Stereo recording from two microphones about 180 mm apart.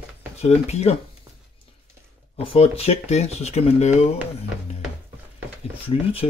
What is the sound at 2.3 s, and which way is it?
Speech, 35° left (ahead or behind).